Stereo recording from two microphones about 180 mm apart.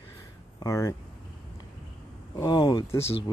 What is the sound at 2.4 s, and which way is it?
Speech, 25° left (ahead or behind).